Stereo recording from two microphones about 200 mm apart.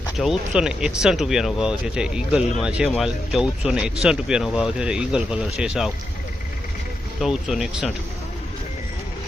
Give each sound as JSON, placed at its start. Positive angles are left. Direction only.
{"t": 0.2, "sound": "speech", "side_deg": 0}
{"t": 7.2, "sound": "speech", "side_deg": 0}